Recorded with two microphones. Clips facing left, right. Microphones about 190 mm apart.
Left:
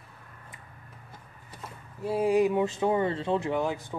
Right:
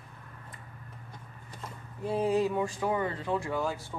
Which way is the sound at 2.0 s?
10° left (ahead or behind).